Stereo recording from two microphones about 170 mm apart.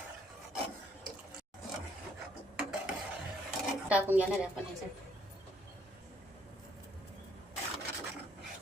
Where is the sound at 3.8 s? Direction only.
10° right (ahead or behind).